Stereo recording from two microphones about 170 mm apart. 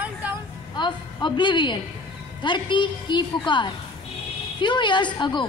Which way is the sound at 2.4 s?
30° left (ahead or behind).